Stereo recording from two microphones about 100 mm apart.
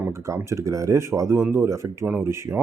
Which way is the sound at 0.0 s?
25° right (ahead or behind).